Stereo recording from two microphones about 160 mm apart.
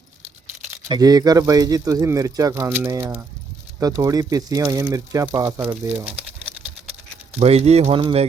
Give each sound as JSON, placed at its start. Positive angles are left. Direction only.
{"t": 0.9, "sound": "speech", "side_deg": -25}
{"t": 7.3, "sound": "speech", "side_deg": -40}